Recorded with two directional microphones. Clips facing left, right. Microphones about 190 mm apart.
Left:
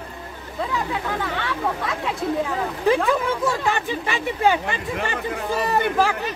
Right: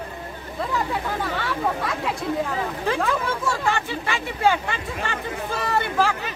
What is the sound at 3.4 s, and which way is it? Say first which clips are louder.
Speech: left 2 dB; 15° left (ahead or behind).